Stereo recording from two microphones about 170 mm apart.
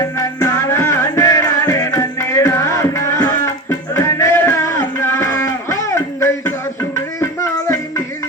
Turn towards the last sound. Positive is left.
turn(degrees=15)  # may be behind; listen again after turning